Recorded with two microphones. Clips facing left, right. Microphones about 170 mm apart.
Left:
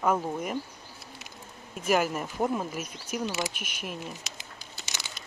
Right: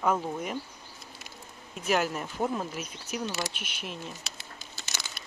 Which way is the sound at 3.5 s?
50° left (ahead or behind).